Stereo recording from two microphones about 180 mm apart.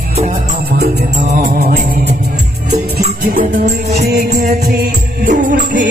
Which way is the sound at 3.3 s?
50° right (ahead or behind).